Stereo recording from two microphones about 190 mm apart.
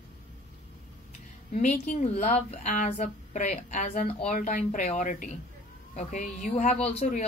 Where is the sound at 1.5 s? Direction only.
35° left (ahead or behind).